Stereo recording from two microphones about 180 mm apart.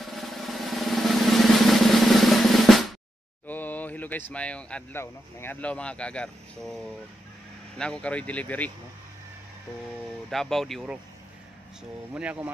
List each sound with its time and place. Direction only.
0.0 s drum: centre (ahead or behind)
3.4 s speech: 10° left (ahead or behind)
7.7 s speech: 5° left (ahead or behind)
10.3 s speech: centre (ahead or behind)
12.1 s speech: 10° right (ahead or behind)